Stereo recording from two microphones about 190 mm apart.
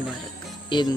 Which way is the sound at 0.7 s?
25° left (ahead or behind).